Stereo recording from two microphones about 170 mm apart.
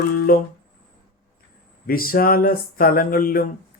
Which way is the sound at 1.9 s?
60° left (ahead or behind).